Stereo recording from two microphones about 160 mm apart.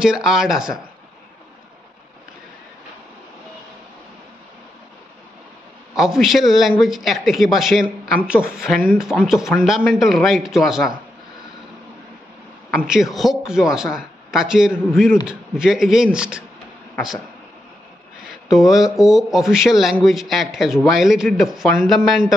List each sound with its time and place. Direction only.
0.0 s speech: 5° right (ahead or behind)
5.9 s speech: centre (ahead or behind)
12.7 s speech: 5° right (ahead or behind)
18.2 s a sound: 5° right (ahead or behind)
18.9 s speech: centre (ahead or behind)